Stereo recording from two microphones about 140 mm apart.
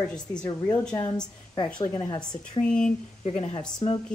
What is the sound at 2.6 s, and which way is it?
Speech, 5° left (ahead or behind).